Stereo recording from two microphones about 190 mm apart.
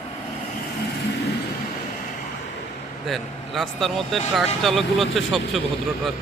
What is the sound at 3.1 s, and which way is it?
A man's voice, centre (ahead or behind).